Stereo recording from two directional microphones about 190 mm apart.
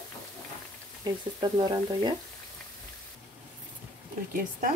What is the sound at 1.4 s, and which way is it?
Speech, 25° right (ahead or behind).